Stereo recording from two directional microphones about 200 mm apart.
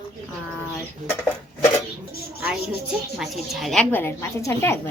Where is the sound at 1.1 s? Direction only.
10° left (ahead or behind).